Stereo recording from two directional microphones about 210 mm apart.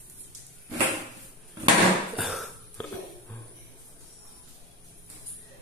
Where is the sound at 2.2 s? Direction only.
Centre (ahead or behind).